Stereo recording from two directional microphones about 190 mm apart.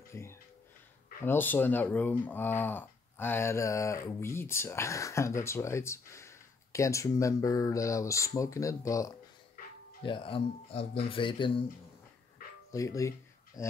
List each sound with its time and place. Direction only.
0.1 s a sound: 15° left (ahead or behind)
1.2 s speech: 10° left (ahead or behind); by 11.6 s 25° left (ahead or behind)
12.7 s speech: 15° left (ahead or behind)